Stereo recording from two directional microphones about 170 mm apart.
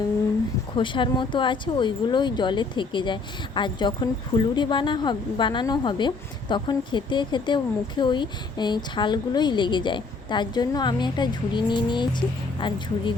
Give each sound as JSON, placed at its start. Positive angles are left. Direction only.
{"t": 0.8, "sound": "a woman's voice", "side_deg": 30}